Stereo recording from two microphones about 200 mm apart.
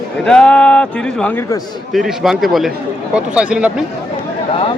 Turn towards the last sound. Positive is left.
turn(degrees=-5)  # may be behind; listen again after turning